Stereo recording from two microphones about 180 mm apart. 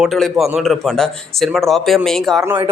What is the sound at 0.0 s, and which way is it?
Speech, centre (ahead or behind).